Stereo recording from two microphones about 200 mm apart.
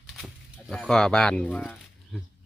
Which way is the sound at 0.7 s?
Centre (ahead or behind).